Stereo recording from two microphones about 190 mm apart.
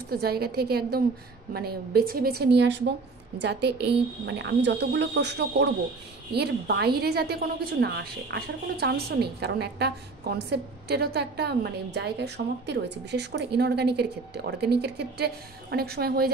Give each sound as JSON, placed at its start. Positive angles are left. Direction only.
{"t": 0.1, "sound": "a woman's voice", "side_deg": -55}